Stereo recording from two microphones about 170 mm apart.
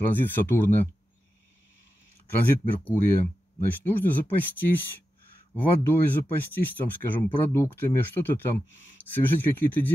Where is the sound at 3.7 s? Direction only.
10° left (ahead or behind).